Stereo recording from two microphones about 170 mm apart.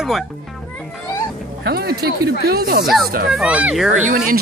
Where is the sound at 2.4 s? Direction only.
65° right (ahead or behind).